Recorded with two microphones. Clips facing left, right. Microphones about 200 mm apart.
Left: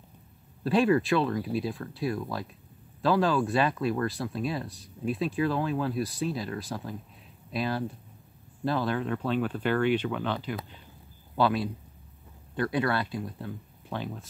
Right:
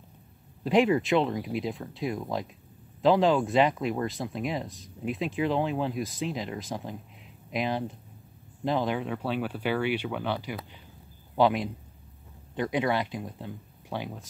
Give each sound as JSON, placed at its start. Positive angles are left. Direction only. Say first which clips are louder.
{"t": 0.7, "sound": "speech", "louder": "even", "side_deg": -20}